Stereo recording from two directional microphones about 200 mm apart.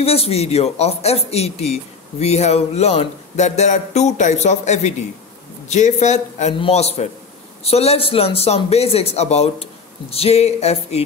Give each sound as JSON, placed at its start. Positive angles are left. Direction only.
{"t": 0.0, "sound": "speech", "side_deg": 30}